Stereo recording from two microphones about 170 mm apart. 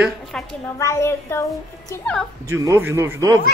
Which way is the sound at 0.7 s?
15° left (ahead or behind).